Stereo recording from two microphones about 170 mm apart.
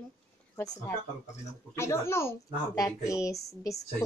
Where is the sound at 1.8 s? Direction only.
15° left (ahead or behind).